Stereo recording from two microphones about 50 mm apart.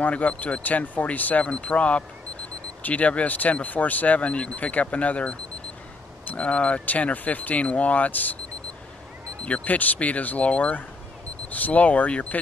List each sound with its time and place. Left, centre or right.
0.0 s speech: left
6.3 s speech: left
9.4 s speech: left